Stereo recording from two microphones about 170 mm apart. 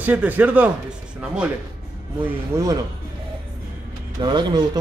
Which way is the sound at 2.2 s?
20° right (ahead or behind).